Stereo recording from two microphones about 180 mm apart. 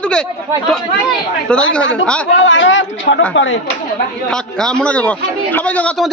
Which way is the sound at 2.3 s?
90° left.